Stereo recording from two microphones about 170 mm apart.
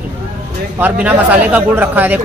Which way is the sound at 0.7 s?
10° right (ahead or behind).